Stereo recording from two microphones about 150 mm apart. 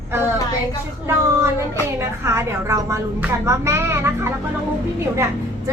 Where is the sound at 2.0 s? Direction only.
20° right (ahead or behind).